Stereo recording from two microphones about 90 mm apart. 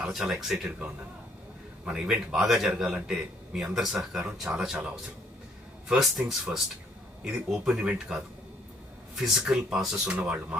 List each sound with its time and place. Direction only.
0.0 s a man's voice: 5° right (ahead or behind)
5.9 s speech: 5° right (ahead or behind)
7.6 s a man's voice: 10° right (ahead or behind)